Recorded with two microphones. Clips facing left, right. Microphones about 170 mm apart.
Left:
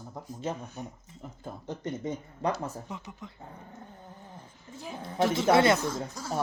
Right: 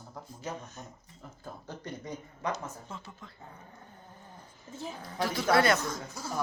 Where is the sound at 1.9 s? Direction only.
25° left (ahead or behind).